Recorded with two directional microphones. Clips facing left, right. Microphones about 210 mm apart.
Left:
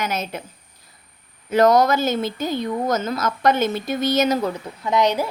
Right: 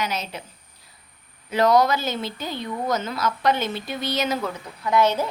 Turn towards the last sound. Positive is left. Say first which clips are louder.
# left 1 dB
turn(degrees=15)  # may be behind; listen again after turning